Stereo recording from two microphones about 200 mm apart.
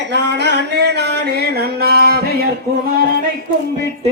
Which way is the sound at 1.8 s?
50° right (ahead or behind).